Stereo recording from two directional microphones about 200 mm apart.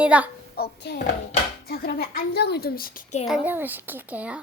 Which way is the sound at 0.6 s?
50° left (ahead or behind).